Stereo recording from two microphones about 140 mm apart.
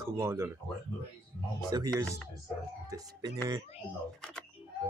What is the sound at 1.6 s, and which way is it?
Speech, 25° right (ahead or behind).